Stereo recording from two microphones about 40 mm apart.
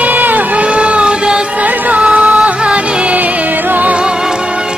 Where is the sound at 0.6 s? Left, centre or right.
Right.